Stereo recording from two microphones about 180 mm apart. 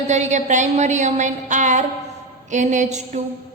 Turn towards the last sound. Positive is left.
turn(degrees=-40)  # may be behind; listen again after turning